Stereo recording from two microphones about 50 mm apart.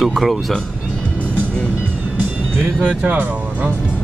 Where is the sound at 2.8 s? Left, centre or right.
Right.